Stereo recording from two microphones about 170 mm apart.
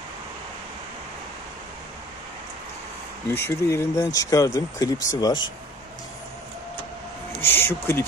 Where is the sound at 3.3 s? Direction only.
15° left (ahead or behind).